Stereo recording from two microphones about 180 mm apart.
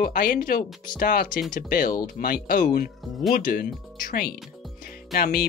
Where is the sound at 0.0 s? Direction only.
50° left (ahead or behind).